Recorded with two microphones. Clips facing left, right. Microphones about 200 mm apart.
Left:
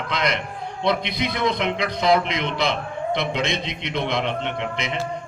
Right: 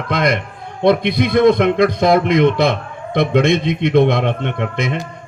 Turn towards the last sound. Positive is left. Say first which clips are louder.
# right 6 dB
turn(degrees=-55)  # may be behind; listen again after turning